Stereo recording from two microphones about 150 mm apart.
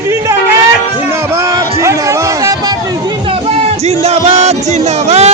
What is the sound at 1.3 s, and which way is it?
Music, 20° right (ahead or behind).